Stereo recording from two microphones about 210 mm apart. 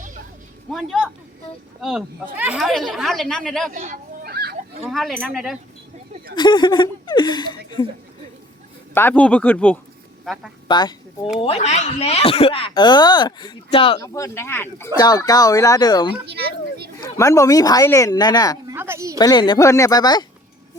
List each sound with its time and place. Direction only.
0.7 s a woman's voice: centre (ahead or behind)
3.7 s a sound: 40° right (ahead or behind)
4.9 s a woman's voice: centre (ahead or behind)
6.3 s speech: 20° left (ahead or behind)
9.0 s a woman's voice: 10° left (ahead or behind)
10.7 s speech: 20° left (ahead or behind)
14.0 s speech: 15° left (ahead or behind)
16.2 s speech: 50° right (ahead or behind)
17.0 s speech: 15° left (ahead or behind)
18.7 s a woman's voice: 10° right (ahead or behind)
19.2 s speech: 20° left (ahead or behind)